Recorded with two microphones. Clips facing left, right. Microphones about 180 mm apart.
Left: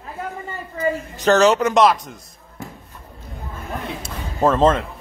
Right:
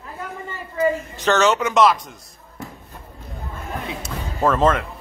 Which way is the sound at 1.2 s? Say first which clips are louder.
Left 3 dB; 35° left (ahead or behind).